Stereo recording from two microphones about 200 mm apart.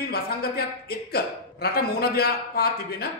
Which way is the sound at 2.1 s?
50° left (ahead or behind).